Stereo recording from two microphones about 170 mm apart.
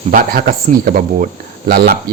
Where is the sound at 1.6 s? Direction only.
70° right (ahead or behind).